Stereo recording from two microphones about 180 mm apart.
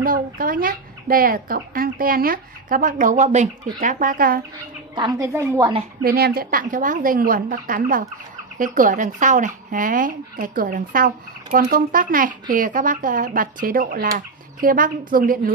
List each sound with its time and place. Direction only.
0.0 s speech: 50° right (ahead or behind)
4.9 s speech: 20° right (ahead or behind)
6.0 s speech: 60° right (ahead or behind)